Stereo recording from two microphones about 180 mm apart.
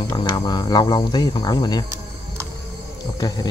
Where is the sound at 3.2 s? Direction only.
20° left (ahead or behind).